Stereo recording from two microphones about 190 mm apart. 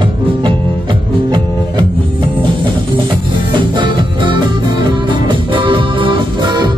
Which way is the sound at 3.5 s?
25° right (ahead or behind).